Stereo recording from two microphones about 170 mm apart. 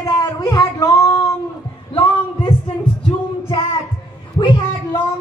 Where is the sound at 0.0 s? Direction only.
20° left (ahead or behind).